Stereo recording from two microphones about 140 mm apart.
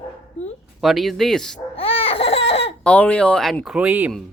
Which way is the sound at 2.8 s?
10° left (ahead or behind).